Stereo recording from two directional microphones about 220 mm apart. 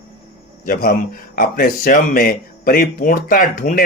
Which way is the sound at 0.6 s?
40° left (ahead or behind).